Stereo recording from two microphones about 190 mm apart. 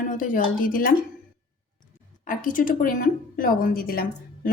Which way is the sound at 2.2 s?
45° left (ahead or behind).